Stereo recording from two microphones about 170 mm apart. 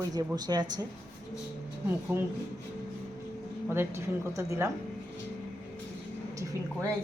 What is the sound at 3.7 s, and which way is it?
A woman's voice, 15° right (ahead or behind).